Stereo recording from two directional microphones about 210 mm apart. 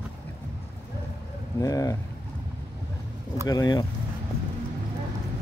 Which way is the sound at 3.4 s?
20° left (ahead or behind).